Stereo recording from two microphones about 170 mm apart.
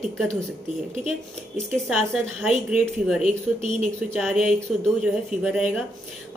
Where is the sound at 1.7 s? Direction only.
Centre (ahead or behind).